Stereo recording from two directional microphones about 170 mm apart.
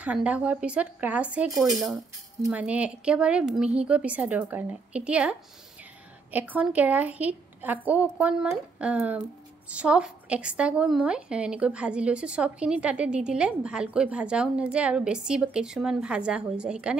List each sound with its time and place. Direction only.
0.0 s a woman's voice: 10° right (ahead or behind)
2.0 s speech: 20° right (ahead or behind)
2.6 s a woman's voice: 5° right (ahead or behind)